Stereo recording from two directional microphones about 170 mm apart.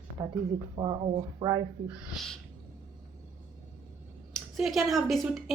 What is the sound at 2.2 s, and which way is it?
Speech, centre (ahead or behind).